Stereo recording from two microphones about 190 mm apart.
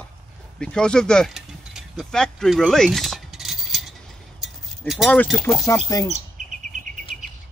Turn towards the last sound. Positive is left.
turn(degrees=20)  # may be behind; listen again after turning